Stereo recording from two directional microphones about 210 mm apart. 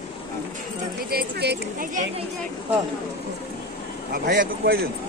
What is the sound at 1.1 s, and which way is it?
Speech, 50° right (ahead or behind).